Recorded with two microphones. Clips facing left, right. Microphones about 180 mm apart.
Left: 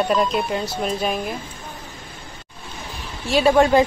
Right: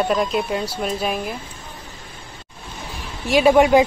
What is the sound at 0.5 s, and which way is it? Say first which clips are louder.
Speech: even; 5° right (ahead or behind).